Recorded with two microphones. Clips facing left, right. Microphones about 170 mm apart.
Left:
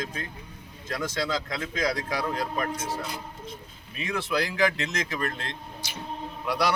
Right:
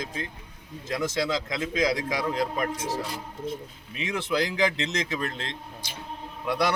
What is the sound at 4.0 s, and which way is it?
A man's voice, 20° right (ahead or behind).